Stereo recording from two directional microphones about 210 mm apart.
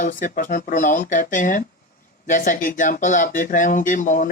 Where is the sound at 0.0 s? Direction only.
40° left (ahead or behind).